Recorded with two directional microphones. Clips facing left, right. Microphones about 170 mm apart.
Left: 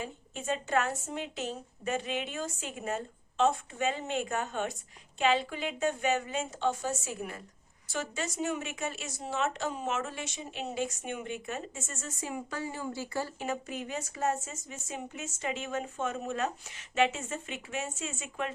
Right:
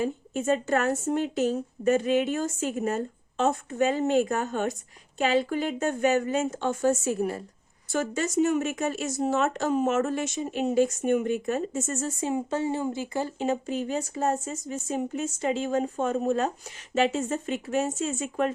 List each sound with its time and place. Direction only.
0.0 s a woman's voice: 45° right (ahead or behind)
7.9 s speech: 45° right (ahead or behind)